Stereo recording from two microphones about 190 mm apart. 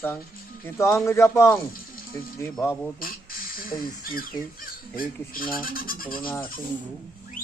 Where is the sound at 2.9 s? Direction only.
50° left (ahead or behind).